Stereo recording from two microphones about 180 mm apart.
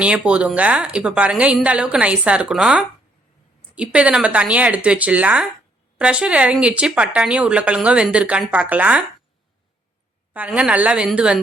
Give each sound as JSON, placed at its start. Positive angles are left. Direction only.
{"t": 0.0, "sound": "a woman's voice", "side_deg": -5}
{"t": 10.3, "sound": "a woman's voice", "side_deg": -10}